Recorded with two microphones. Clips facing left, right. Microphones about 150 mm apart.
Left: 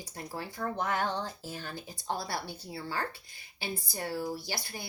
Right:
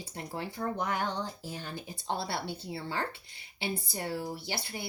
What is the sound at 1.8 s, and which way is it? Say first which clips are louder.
Speech: right 1 dB; 25° right (ahead or behind).